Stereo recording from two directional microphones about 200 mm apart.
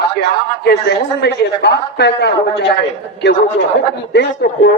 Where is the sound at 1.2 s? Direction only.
55° left (ahead or behind).